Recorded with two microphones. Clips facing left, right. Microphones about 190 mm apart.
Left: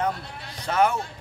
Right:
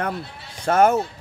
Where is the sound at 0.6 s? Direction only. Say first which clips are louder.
Right 5 dB; 45° right (ahead or behind).